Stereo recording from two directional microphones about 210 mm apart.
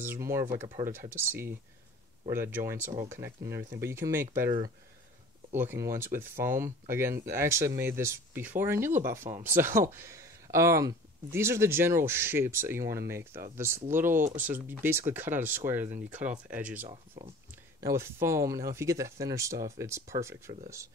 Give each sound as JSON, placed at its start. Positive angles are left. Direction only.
{"t": 0.0, "sound": "speech", "side_deg": -10}
{"t": 5.5, "sound": "speech", "side_deg": -10}
{"t": 16.9, "sound": "speech", "side_deg": -30}
{"t": 17.7, "sound": "speech", "side_deg": -15}